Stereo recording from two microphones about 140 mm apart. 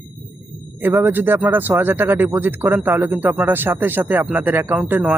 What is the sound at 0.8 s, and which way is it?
Speech, 15° right (ahead or behind).